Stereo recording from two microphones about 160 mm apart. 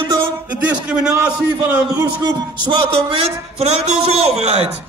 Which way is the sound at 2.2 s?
25° right (ahead or behind).